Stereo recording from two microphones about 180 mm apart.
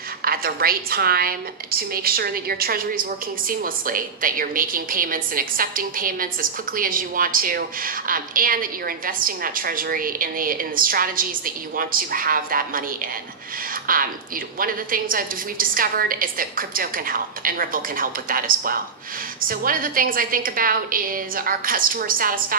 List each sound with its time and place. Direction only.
0.2 s a woman's voice: 55° right (ahead or behind)